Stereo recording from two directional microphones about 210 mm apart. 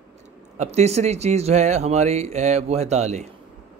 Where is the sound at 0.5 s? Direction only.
30° right (ahead or behind).